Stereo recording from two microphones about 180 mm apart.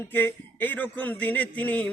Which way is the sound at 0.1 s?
10° left (ahead or behind).